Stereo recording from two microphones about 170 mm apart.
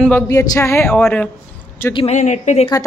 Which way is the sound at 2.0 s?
40° left (ahead or behind).